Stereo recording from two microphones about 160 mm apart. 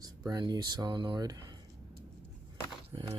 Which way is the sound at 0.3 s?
25° right (ahead or behind).